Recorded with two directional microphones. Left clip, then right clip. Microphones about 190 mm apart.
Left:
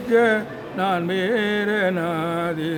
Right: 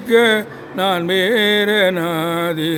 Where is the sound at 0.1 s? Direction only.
20° right (ahead or behind).